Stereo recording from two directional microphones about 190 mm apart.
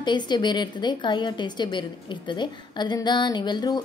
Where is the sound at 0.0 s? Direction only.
25° left (ahead or behind).